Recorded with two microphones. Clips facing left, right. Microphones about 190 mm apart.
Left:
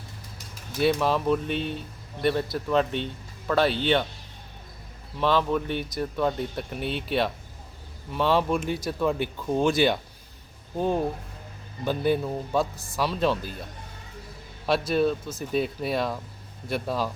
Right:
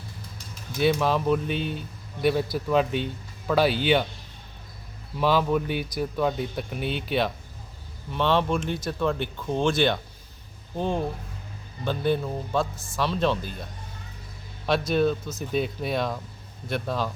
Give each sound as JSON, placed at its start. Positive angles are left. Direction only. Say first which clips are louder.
{"t": 0.8, "sound": "speech", "louder": "even", "side_deg": 0}
{"t": 5.2, "sound": "speech", "louder": "right 1 dB", "side_deg": -5}
{"t": 12.7, "sound": "speech", "louder": "right 1 dB", "side_deg": 35}
{"t": 13.0, "sound": "speech", "louder": "even", "side_deg": 5}
{"t": 14.7, "sound": "speech", "louder": "even", "side_deg": 5}